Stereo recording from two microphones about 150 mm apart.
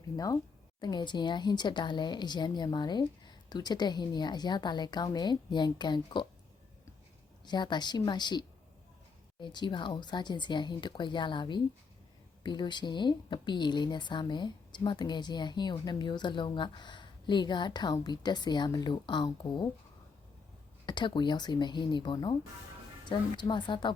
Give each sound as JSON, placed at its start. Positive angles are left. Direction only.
{"t": 0.8, "sound": "speech", "side_deg": 30}
{"t": 7.4, "sound": "speech", "side_deg": 30}
{"t": 20.8, "sound": "speech", "side_deg": 30}